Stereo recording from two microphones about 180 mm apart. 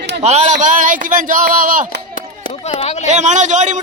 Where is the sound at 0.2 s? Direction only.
40° right (ahead or behind).